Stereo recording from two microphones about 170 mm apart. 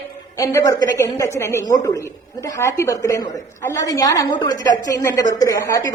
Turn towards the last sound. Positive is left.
turn(degrees=20)  # may be behind; listen again after turning